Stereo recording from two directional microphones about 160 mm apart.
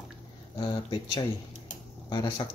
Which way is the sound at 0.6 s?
30° left (ahead or behind).